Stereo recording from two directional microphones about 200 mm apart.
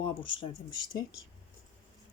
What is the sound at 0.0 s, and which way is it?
Speech, 25° left (ahead or behind).